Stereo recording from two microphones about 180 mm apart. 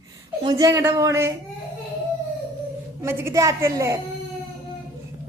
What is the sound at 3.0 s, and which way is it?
A woman's voice, 15° right (ahead or behind).